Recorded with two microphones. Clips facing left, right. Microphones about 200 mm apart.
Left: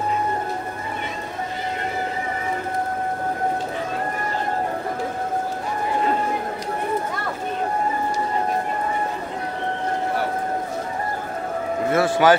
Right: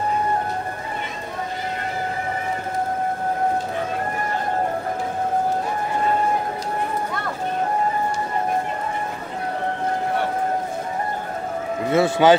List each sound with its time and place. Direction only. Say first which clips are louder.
11.9 s speech: right 2 dB; 20° right (ahead or behind)